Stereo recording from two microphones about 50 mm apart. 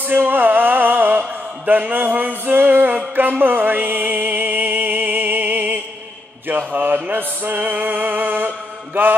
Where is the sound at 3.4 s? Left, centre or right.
Right.